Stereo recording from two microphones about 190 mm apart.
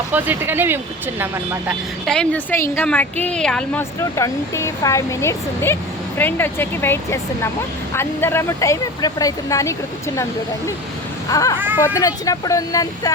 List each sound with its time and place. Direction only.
0.1 s speech: 10° right (ahead or behind)
2.0 s a woman's voice: 5° left (ahead or behind)
4.1 s speech: 15° left (ahead or behind)
11.3 s speech: 20° left (ahead or behind)
11.6 s speech: 10° right (ahead or behind)
11.9 s speech: 20° left (ahead or behind)